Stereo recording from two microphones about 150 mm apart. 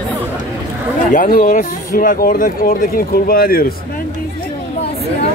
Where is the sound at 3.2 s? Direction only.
85° left.